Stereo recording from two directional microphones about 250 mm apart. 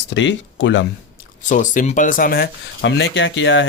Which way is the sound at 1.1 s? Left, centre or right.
Left.